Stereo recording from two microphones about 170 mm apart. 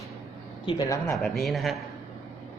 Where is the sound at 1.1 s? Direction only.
Centre (ahead or behind).